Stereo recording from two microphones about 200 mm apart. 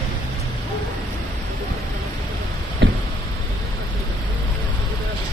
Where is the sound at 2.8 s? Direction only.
65° right (ahead or behind).